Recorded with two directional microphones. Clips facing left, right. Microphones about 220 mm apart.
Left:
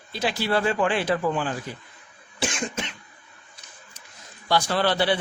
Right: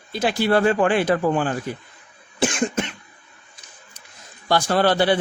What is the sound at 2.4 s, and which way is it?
Cough, 55° right (ahead or behind).